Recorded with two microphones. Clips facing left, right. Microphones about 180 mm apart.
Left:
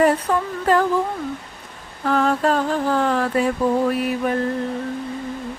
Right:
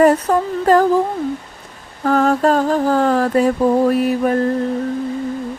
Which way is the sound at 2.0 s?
45° right (ahead or behind).